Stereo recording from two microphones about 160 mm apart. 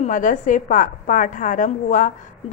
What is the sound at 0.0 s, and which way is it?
A woman's voice, 55° left (ahead or behind).